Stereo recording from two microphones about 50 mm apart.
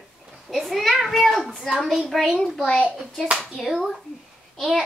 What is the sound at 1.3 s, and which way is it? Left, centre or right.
Speech, centre.